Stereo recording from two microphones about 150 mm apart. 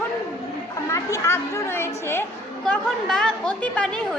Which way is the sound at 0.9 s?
20° left (ahead or behind).